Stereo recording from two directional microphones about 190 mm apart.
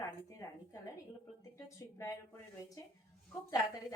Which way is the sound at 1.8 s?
15° left (ahead or behind).